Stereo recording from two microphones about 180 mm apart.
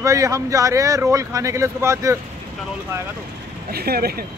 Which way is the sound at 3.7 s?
60° right (ahead or behind).